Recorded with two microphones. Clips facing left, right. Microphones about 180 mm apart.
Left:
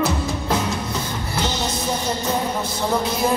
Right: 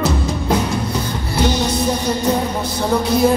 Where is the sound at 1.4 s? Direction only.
15° right (ahead or behind).